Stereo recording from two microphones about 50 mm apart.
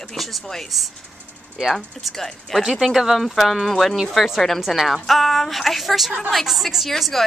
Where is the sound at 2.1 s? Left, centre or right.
Centre.